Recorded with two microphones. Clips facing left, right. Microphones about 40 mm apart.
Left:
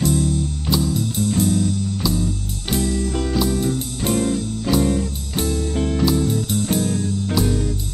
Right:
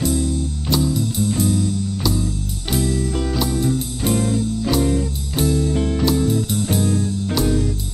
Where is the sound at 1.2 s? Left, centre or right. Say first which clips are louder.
Left 2 dB; centre.